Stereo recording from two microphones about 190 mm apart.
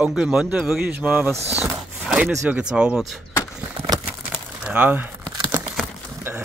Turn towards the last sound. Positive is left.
turn(degrees=-10)  # may be behind; listen again after turning